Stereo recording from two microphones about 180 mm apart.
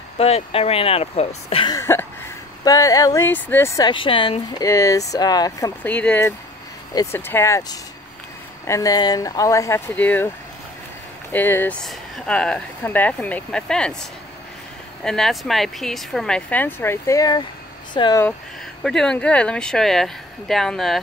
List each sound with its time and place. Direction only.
0.2 s speech: 35° left (ahead or behind)
1.8 s speech: 15° left (ahead or behind)
5.9 s speech: 10° left (ahead or behind)
11.3 s speech: 10° left (ahead or behind)
15.0 s speech: centre (ahead or behind); by 18.2 s 25° left (ahead or behind)
18.8 s speech: 5° left (ahead or behind)